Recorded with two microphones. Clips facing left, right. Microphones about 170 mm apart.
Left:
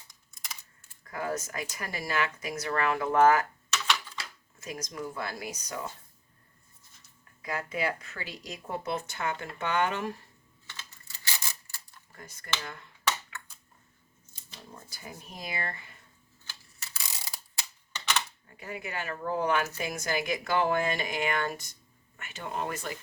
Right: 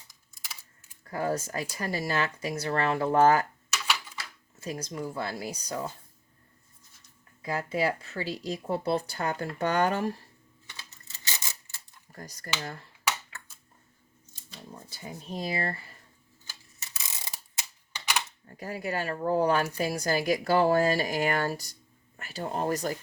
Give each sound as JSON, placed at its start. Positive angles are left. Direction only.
{"t": 1.0, "sound": "a woman's voice", "side_deg": -30}
{"t": 3.7, "sound": "typewriter", "side_deg": -10}
{"t": 4.6, "sound": "speech", "side_deg": -30}
{"t": 7.4, "sound": "a woman's voice", "side_deg": -30}
{"t": 10.7, "sound": "a sound", "side_deg": -20}
{"t": 12.1, "sound": "a woman's voice", "side_deg": -40}
{"t": 13.3, "sound": "a sound", "side_deg": -35}
{"t": 14.8, "sound": "a woman's voice", "side_deg": -25}
{"t": 16.8, "sound": "a sound", "side_deg": -20}
{"t": 18.4, "sound": "a woman's voice", "side_deg": -40}